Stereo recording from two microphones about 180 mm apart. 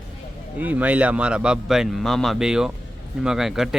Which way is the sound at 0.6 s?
10° right (ahead or behind).